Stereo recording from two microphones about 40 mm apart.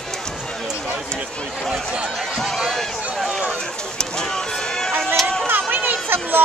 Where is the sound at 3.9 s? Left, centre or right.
Centre.